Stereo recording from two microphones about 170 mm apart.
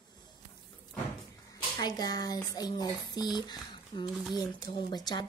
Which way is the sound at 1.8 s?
25° left (ahead or behind).